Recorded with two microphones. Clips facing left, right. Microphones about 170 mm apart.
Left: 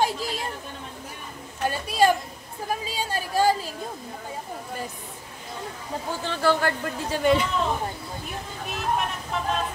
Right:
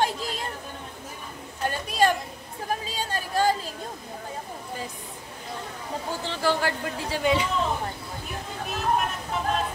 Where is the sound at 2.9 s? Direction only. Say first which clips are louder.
Left 3 dB; 10° left (ahead or behind).